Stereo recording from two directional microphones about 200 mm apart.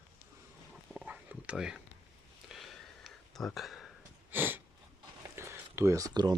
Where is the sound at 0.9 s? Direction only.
5° right (ahead or behind).